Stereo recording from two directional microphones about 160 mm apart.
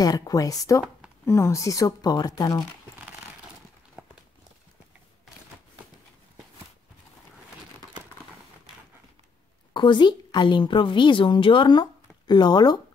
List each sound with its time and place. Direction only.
0.0 s a woman's voice: 25° left (ahead or behind)
4.0 s clip-clop: 5° right (ahead or behind)
9.8 s a woman's voice: 30° left (ahead or behind)